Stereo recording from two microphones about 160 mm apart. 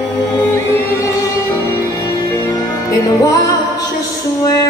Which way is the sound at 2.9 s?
20° left (ahead or behind).